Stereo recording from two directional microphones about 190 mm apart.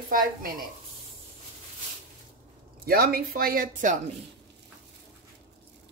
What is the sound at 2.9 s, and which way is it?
Speech, 50° right (ahead or behind).